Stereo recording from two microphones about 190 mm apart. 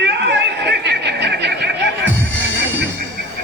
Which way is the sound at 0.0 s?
60° right (ahead or behind).